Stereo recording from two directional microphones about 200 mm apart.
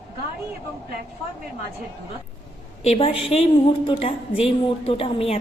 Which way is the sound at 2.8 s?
30° left (ahead or behind).